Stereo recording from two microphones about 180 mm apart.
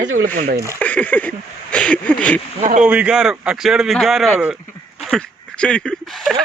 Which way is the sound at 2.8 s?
5° right (ahead or behind).